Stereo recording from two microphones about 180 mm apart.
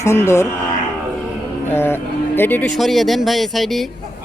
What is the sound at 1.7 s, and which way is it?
Speech, 10° left (ahead or behind).